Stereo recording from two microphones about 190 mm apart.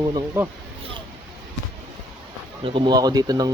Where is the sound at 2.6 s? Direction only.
25° right (ahead or behind).